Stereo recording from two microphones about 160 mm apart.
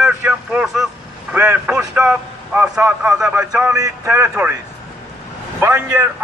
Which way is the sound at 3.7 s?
20° right (ahead or behind).